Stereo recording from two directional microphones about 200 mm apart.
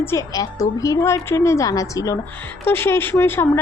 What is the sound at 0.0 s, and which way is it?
A woman's voice, 15° left (ahead or behind).